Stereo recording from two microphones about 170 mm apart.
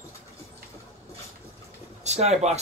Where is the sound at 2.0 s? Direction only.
40° right (ahead or behind).